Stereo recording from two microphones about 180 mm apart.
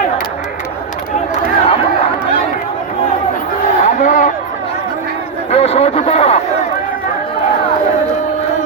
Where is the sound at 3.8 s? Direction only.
45° left (ahead or behind).